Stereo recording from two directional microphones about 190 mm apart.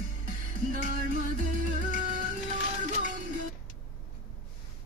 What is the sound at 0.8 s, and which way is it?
Music, 40° right (ahead or behind).